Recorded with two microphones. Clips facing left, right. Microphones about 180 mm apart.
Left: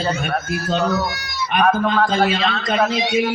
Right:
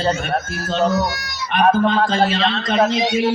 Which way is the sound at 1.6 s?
30° right (ahead or behind).